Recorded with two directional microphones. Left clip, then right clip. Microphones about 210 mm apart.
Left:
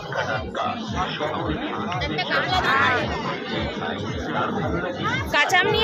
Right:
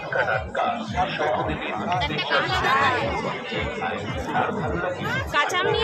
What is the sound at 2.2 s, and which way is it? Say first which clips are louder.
Speech: left 2 dB; 45° right (ahead or behind).